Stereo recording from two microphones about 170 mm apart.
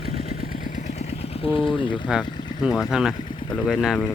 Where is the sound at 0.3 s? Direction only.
60° left (ahead or behind); by 2.0 s 30° left (ahead or behind).